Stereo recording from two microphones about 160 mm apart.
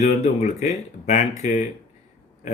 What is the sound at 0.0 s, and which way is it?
Speech, 45° left (ahead or behind).